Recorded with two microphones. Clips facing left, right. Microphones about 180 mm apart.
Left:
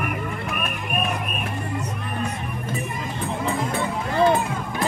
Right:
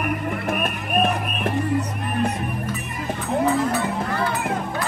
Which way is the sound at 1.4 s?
65° right (ahead or behind).